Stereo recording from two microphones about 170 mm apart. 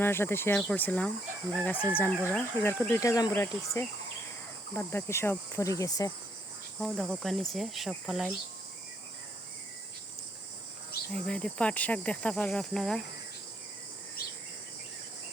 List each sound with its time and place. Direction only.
0.0 s cricket: 15° left (ahead or behind)
3.0 s speech: 20° left (ahead or behind)
4.7 s cricket: 15° left (ahead or behind)
6.7 s speech: centre (ahead or behind)
11.1 s cricket: 5° left (ahead or behind)